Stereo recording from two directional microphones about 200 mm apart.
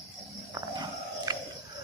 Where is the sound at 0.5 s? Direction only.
20° right (ahead or behind).